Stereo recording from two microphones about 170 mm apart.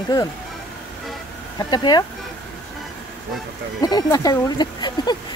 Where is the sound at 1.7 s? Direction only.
25° left (ahead or behind).